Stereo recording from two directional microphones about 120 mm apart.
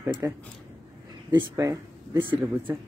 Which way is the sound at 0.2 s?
25° right (ahead or behind).